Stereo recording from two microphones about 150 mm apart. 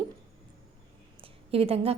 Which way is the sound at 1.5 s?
40° right (ahead or behind).